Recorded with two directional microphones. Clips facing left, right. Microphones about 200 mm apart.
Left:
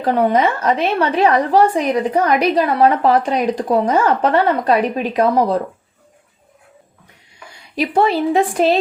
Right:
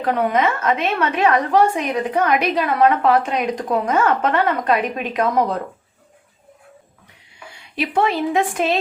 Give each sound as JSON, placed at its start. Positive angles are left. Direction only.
{"t": 0.0, "sound": "a woman's voice", "side_deg": 30}
{"t": 7.8, "sound": "a woman's voice", "side_deg": 35}